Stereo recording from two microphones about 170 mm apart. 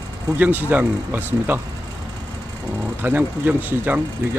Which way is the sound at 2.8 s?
10° right (ahead or behind).